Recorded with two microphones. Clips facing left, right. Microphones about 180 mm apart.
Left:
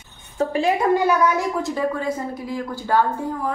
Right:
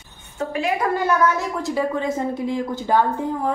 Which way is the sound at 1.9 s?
25° right (ahead or behind).